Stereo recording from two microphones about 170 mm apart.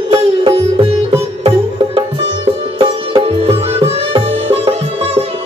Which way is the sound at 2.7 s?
30° right (ahead or behind).